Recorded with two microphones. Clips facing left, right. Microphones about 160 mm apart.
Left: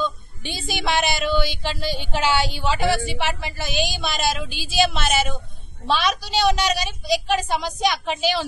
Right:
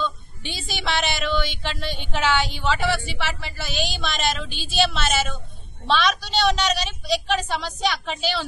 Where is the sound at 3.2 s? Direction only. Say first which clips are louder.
Left 3 dB; 15° left (ahead or behind).